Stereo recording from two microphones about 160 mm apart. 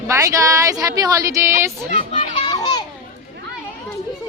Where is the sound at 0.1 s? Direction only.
20° right (ahead or behind).